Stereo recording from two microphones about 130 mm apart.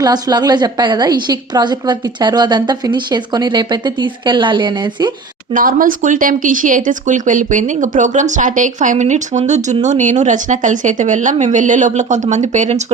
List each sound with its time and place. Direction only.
0.0 s a woman's voice: 30° right (ahead or behind)
5.5 s speech: 90° right; by 12.8 s 65° right (ahead or behind)